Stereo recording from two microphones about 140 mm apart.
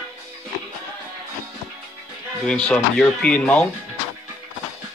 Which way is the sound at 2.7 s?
5° left (ahead or behind).